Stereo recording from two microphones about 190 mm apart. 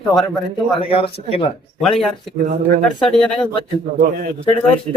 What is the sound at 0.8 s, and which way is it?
Speech, 30° left (ahead or behind).